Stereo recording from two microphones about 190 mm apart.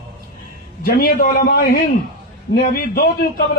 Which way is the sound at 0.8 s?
50° left (ahead or behind).